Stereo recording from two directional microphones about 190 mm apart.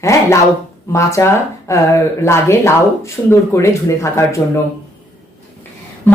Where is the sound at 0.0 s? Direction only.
15° left (ahead or behind).